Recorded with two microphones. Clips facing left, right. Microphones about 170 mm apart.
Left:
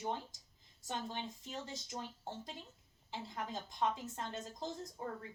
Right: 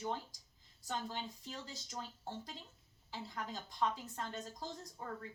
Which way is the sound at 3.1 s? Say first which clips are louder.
Left 2 dB; 20° left (ahead or behind).